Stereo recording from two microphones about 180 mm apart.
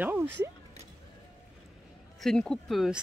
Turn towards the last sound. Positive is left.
turn(degrees=0)  # may be behind; listen again after turning